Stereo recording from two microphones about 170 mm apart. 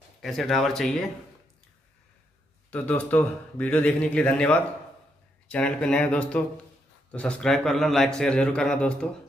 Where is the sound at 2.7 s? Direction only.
10° left (ahead or behind).